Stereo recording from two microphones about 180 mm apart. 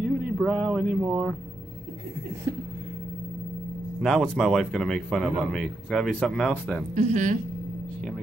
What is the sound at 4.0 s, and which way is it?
Speech, centre (ahead or behind).